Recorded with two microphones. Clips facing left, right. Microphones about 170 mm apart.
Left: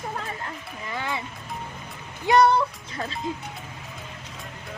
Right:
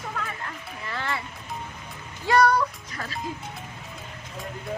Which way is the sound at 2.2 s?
20° left (ahead or behind).